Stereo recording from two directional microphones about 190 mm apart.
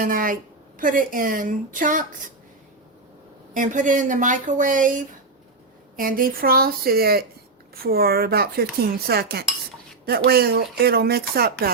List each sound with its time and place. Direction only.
0.0 s a woman's voice: 45° right (ahead or behind)
3.5 s a woman's voice: 40° right (ahead or behind)
7.9 s cutlery: 55° right (ahead or behind)